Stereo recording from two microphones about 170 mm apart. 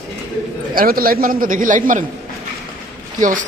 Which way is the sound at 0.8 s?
60° right (ahead or behind).